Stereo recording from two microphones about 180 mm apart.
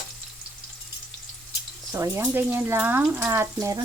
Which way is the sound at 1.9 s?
15° right (ahead or behind).